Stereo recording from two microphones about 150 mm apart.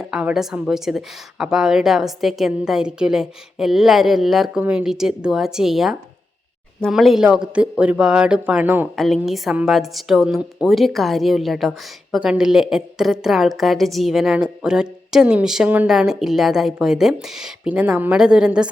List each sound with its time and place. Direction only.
0.0 s a woman's voice: 5° right (ahead or behind)
9.0 s a woman's voice: centre (ahead or behind)